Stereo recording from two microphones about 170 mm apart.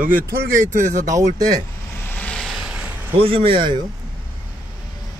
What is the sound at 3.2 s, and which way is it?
Speech, 30° right (ahead or behind).